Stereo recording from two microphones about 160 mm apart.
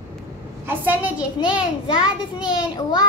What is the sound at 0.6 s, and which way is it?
A child's voice, 10° right (ahead or behind).